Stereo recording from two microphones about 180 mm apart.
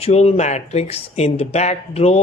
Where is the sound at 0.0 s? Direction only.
35° left (ahead or behind).